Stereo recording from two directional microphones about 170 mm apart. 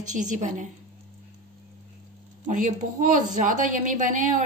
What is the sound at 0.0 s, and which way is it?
Speech, 45° right (ahead or behind).